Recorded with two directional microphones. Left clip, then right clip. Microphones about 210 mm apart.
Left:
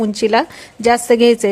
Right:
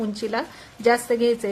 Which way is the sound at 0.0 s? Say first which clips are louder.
Left 12 dB; 30° left (ahead or behind).